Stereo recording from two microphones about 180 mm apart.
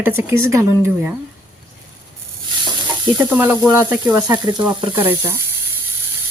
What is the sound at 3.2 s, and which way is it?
Speech, 10° right (ahead or behind).